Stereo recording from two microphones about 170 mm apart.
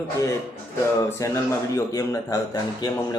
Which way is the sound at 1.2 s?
20° left (ahead or behind).